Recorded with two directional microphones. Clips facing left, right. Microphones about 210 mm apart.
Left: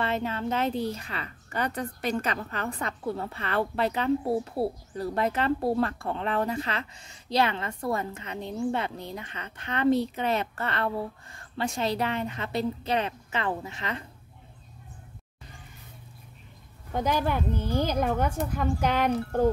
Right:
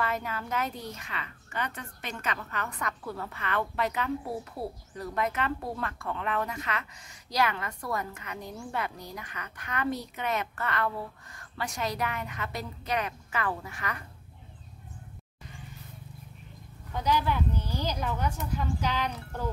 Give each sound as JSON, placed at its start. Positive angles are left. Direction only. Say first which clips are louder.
{"t": 0.0, "sound": "a woman's voice", "louder": "left 4 dB", "side_deg": 25}
{"t": 16.9, "sound": "a woman's voice", "louder": "left 2 dB", "side_deg": 50}